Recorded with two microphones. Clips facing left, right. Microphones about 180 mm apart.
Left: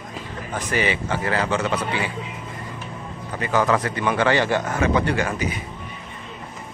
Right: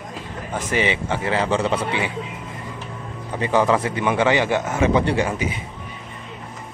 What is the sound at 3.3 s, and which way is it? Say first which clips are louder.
A man's voice: right 2 dB; 25° right (ahead or behind).